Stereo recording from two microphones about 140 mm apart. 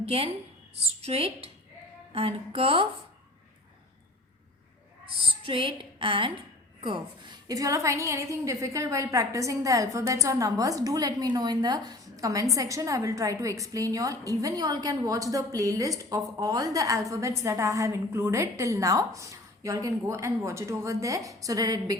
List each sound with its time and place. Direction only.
0.0 s a woman's voice: 45° right (ahead or behind)
1.0 s music: 45° right (ahead or behind)
5.2 s female singing: 40° right (ahead or behind)
6.8 s a woman's voice: 35° right (ahead or behind)